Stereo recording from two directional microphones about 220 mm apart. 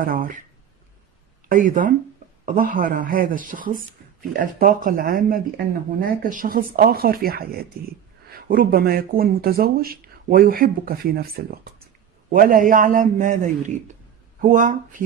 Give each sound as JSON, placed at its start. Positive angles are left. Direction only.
{"t": 0.0, "sound": "speech", "side_deg": -40}
{"t": 1.5, "sound": "speech", "side_deg": -40}